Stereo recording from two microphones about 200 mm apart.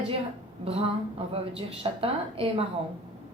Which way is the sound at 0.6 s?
30° right (ahead or behind).